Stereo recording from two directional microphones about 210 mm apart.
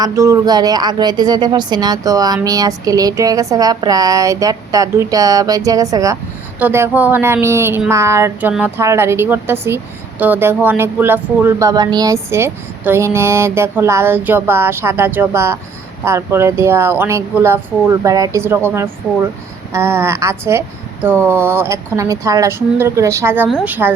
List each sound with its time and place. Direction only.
0.0 s speech: 15° right (ahead or behind)